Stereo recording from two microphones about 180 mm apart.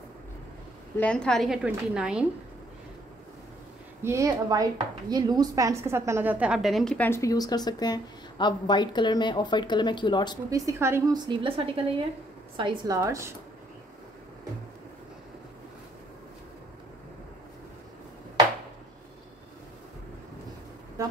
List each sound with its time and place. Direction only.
0.9 s a woman's voice: 5° left (ahead or behind)
4.0 s a woman's voice: 15° right (ahead or behind); by 10.3 s 25° left (ahead or behind)
10.5 s a woman's voice: 20° right (ahead or behind)